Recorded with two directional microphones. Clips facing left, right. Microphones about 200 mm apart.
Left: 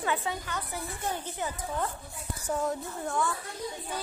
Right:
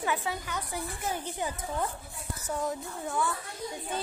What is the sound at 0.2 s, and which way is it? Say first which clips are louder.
Speech: even; 10° right (ahead or behind).